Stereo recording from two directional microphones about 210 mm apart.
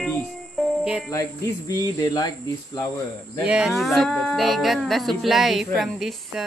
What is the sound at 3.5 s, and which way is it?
Speech, 5° right (ahead or behind).